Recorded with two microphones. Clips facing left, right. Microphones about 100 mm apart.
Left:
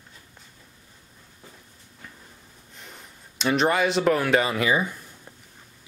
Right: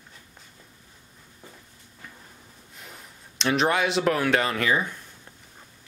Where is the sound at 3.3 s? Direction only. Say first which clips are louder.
Left 1 dB; centre (ahead or behind).